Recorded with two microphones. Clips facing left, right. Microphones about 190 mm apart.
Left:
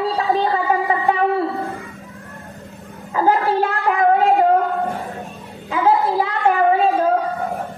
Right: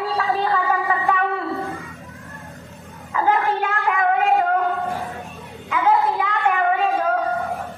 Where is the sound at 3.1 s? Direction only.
35° left (ahead or behind).